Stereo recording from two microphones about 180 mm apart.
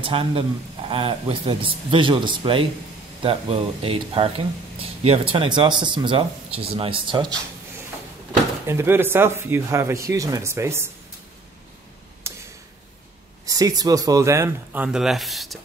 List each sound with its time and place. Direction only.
0.0 s a man's voice: 30° right (ahead or behind)
8.6 s speech: 15° right (ahead or behind)
12.2 s tick-tock: 15° right (ahead or behind)
13.5 s speech: 20° right (ahead or behind); by 15.6 s centre (ahead or behind)